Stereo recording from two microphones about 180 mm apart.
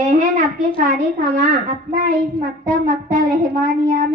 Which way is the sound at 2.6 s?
50° right (ahead or behind).